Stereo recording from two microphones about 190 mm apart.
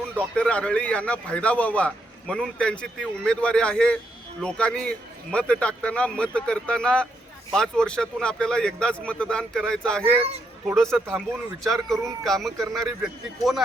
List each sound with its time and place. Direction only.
0.3 s a man's voice: 5° left (ahead or behind)
10.0 s speech: 30° right (ahead or behind)
10.7 s a man's voice: centre (ahead or behind)
12.2 s a man's voice: centre (ahead or behind)